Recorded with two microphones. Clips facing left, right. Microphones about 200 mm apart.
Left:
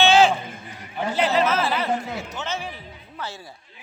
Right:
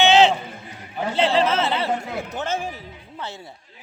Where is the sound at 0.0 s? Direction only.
20° right (ahead or behind).